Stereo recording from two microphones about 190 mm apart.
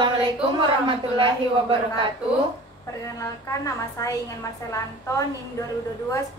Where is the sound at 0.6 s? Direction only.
25° right (ahead or behind).